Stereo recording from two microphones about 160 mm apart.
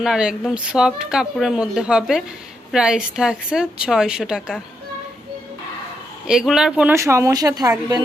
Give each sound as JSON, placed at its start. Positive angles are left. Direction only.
{"t": 0.0, "sound": "speech", "side_deg": -5}
{"t": 6.2, "sound": "speech", "side_deg": -5}
{"t": 6.9, "sound": "speech", "side_deg": -20}